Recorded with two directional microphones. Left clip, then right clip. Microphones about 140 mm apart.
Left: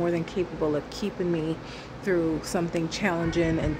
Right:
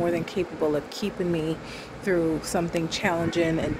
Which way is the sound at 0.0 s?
10° left (ahead or behind).